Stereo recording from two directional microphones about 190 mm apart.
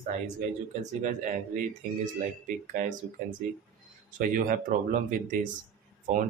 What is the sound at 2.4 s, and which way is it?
Speech, 40° right (ahead or behind).